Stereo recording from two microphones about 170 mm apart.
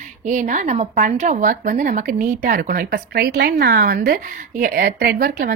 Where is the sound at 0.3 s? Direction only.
50° right (ahead or behind).